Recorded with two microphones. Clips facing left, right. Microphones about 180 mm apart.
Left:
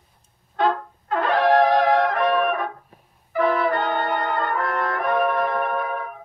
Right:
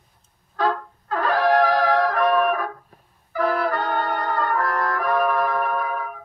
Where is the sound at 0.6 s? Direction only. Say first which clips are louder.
Left 1 dB; 25° left (ahead or behind).